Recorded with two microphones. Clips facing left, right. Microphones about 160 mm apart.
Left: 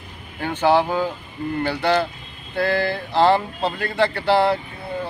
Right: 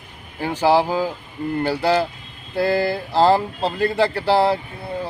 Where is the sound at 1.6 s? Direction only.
5° right (ahead or behind).